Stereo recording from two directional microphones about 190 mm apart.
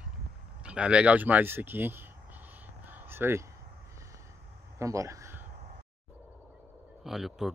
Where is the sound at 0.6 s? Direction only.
5° right (ahead or behind).